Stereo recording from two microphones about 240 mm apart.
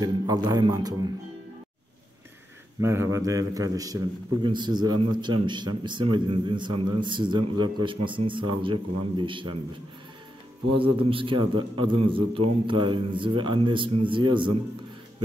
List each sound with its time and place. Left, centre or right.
0.0 s a man's voice: centre
2.8 s a man's voice: centre
10.8 s a man's voice: right